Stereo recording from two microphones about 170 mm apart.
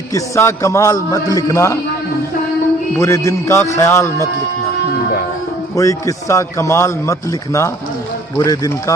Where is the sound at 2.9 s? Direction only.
15° left (ahead or behind).